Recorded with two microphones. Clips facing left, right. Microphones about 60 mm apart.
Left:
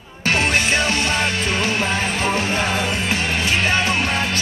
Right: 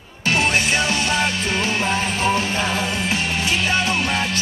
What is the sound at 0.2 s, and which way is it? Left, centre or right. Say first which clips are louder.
Music: even; left.